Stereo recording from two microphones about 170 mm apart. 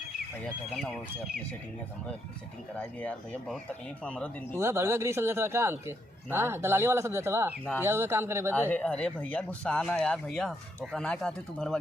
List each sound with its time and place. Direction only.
2.7 s speech: 10° left (ahead or behind)
4.5 s speech: 15° right (ahead or behind)
8.5 s speech: 10° left (ahead or behind)